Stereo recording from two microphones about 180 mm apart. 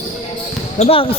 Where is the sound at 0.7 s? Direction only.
35° left (ahead or behind).